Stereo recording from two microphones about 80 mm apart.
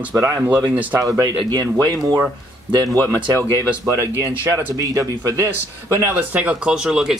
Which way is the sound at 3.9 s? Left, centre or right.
Right.